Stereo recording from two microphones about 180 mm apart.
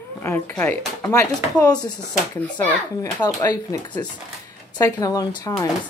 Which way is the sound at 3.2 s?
20° left (ahead or behind).